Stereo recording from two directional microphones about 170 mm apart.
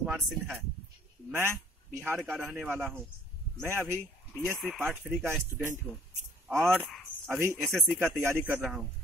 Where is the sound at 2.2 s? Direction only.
Centre (ahead or behind).